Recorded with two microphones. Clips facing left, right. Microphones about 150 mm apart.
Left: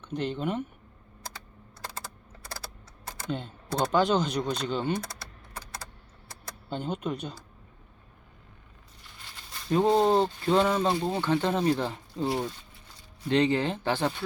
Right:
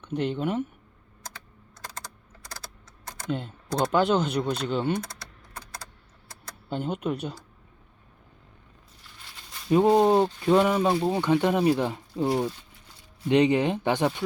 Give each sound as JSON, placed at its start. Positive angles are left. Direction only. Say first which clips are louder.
{"t": 0.0, "sound": "speech", "louder": "right 3 dB", "side_deg": -10}
{"t": 3.2, "sound": "speech", "louder": "right 3 dB", "side_deg": -5}
{"t": 6.7, "sound": "speech", "louder": "right 3 dB", "side_deg": -5}
{"t": 9.6, "sound": "speech", "louder": "right 3 dB", "side_deg": -10}